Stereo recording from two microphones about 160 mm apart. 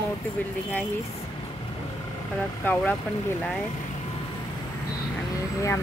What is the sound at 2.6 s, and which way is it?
Speech, 10° left (ahead or behind).